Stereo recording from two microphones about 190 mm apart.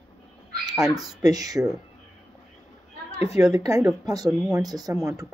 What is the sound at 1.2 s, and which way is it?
Speech, 20° right (ahead or behind).